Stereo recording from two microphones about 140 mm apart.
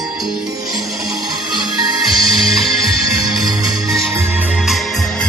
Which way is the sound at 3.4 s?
30° right (ahead or behind).